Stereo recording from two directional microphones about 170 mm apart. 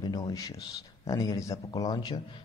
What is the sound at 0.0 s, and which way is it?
A man's voice, 25° left (ahead or behind).